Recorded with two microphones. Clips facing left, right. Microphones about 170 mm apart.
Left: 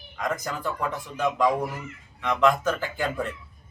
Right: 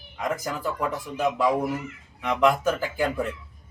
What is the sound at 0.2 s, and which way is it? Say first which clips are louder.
Speech: right 1 dB; 10° right (ahead or behind).